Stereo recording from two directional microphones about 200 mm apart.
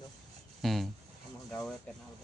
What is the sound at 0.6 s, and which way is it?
Speech, centre (ahead or behind).